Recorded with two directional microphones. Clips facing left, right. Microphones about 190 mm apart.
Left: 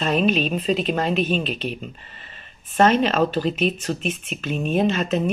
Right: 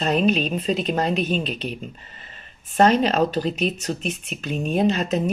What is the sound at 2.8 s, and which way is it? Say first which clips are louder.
Speech: even; 35° right (ahead or behind).